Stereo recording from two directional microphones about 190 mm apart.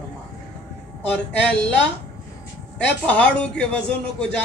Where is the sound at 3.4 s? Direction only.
5° left (ahead or behind).